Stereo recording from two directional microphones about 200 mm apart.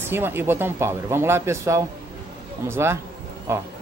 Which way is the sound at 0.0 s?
10° right (ahead or behind).